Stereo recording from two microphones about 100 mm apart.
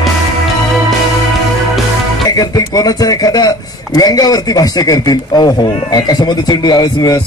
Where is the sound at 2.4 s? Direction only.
40° left (ahead or behind).